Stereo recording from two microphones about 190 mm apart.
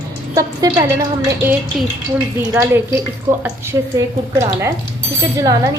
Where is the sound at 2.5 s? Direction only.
10° right (ahead or behind).